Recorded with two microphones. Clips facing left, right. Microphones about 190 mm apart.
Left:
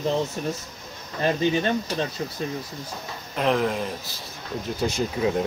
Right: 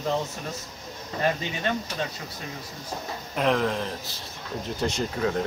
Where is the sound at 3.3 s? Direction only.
Centre (ahead or behind).